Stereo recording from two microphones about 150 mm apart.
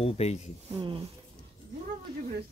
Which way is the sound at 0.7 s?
35° right (ahead or behind).